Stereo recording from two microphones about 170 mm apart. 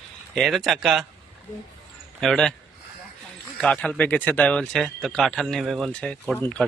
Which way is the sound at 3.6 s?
5° left (ahead or behind).